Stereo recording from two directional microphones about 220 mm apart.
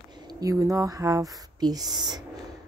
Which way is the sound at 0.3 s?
15° right (ahead or behind).